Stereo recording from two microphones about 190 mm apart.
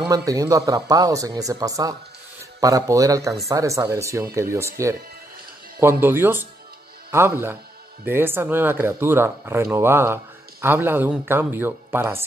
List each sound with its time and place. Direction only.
0.1 s speech: 20° right (ahead or behind)